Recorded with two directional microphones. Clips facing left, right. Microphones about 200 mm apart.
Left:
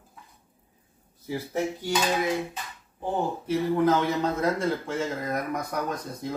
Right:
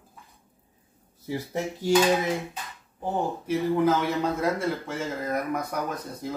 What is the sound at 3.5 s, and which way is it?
Speech, 10° right (ahead or behind).